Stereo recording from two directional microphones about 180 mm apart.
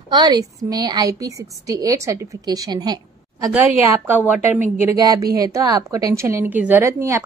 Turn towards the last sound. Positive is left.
turn(degrees=-15)  # may be behind; listen again after turning